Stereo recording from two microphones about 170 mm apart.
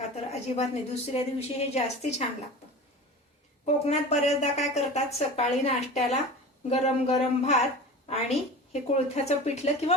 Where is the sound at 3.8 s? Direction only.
40° left (ahead or behind).